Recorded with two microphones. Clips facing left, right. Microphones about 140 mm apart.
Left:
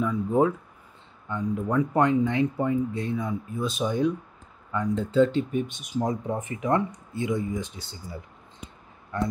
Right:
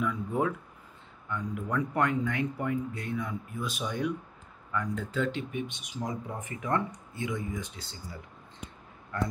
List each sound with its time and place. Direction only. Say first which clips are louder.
0.0 s speech: left 7 dB; 25° left (ahead or behind); by 6.1 s 45° left (ahead or behind)
6.2 s speech: left 8 dB; 20° left (ahead or behind)
7.2 s speech: left 6 dB; 30° left (ahead or behind)